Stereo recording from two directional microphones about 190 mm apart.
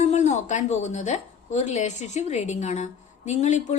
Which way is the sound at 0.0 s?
35° left (ahead or behind).